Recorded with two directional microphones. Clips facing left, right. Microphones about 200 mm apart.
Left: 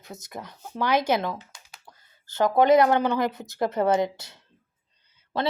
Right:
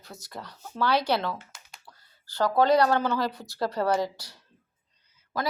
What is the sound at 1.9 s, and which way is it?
A woman's voice, 20° left (ahead or behind).